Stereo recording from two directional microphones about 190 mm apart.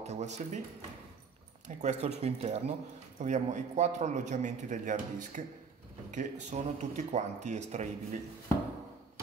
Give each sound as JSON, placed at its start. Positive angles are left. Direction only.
{"t": 0.0, "sound": "speech", "side_deg": -35}
{"t": 1.8, "sound": "a man's voice", "side_deg": -35}